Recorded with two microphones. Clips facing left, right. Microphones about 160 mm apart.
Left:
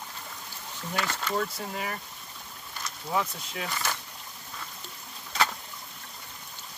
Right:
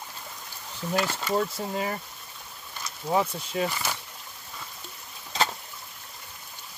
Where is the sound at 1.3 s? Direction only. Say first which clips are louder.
Right 6 dB; 25° right (ahead or behind).